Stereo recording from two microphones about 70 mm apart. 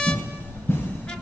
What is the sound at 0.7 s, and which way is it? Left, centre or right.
Music, left.